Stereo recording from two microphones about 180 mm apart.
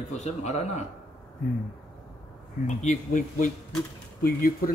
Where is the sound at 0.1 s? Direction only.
40° left (ahead or behind).